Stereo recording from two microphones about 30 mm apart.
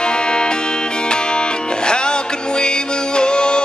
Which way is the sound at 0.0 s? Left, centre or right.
Left.